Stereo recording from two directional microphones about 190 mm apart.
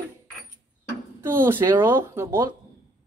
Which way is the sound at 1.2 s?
10° right (ahead or behind).